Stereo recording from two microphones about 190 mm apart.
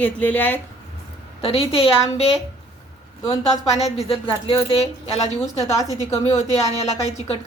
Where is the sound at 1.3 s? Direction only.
30° left (ahead or behind).